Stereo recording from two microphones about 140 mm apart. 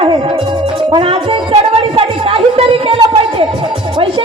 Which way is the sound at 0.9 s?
40° right (ahead or behind).